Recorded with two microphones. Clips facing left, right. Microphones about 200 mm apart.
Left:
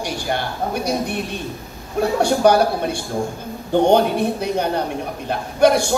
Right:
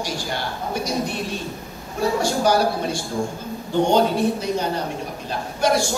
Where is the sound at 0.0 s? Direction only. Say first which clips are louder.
Left 4 dB; 60° left (ahead or behind).